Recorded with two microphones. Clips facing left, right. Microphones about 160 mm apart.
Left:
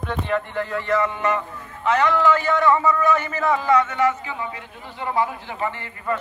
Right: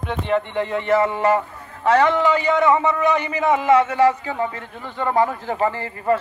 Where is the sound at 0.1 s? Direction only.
20° right (ahead or behind).